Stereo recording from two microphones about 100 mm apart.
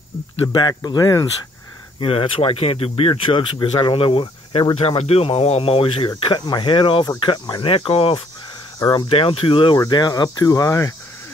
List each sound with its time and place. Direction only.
0.5 s speech: 45° left (ahead or behind)
2.0 s speech: 65° left (ahead or behind)
6.0 s speech: 50° left (ahead or behind); by 8.2 s 65° left (ahead or behind)
8.7 s speech: 40° left (ahead or behind)
9.1 s speech: 65° left (ahead or behind)
9.8 s speech: 45° left (ahead or behind)